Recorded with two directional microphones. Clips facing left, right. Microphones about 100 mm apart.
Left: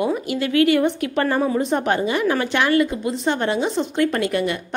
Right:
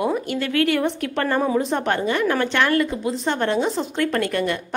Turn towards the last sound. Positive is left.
turn(degrees=5)  # may be behind; listen again after turning